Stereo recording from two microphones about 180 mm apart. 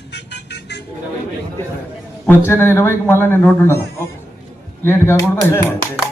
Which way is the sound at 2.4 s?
15° left (ahead or behind).